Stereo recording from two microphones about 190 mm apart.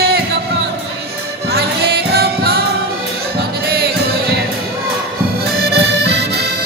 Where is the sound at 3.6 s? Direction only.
55° right (ahead or behind).